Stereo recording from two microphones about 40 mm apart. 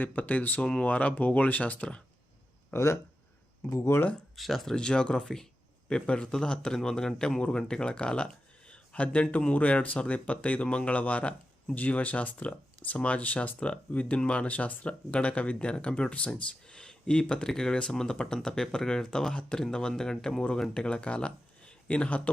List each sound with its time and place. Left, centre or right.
0.0 s speech: left
0.6 s a man's voice: left
0.9 s speech: left
2.7 s speech: left
4.4 s speech: centre
4.7 s a man's voice: left
5.9 s a man's voice: left
19.3 s a man's voice: left
20.7 s a man's voice: left